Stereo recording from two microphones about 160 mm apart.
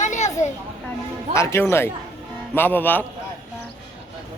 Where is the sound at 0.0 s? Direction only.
50° left (ahead or behind).